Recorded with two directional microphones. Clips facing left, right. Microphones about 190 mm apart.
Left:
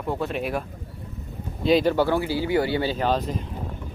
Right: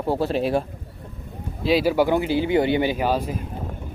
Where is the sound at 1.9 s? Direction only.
15° right (ahead or behind).